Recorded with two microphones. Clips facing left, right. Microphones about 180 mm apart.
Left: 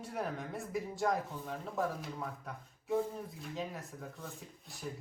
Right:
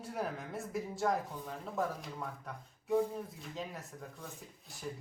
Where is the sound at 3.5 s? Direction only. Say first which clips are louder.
Left 3 dB; centre (ahead or behind).